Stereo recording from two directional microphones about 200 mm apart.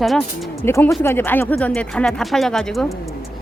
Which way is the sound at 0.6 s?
10° left (ahead or behind).